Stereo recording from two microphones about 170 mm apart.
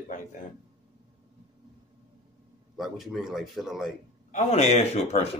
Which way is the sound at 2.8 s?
Centre (ahead or behind).